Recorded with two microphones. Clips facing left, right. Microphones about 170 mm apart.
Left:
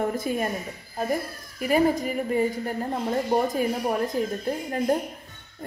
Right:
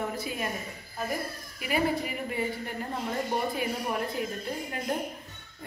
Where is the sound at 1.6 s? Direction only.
45° left (ahead or behind).